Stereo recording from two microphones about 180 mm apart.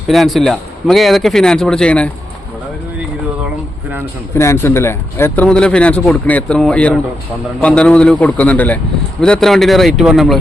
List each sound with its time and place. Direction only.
0.1 s a man's voice: centre (ahead or behind)
4.4 s a man's voice: 15° left (ahead or behind)